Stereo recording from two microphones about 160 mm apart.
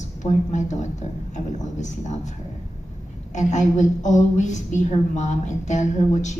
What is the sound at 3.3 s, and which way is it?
A woman's voice, 50° left (ahead or behind).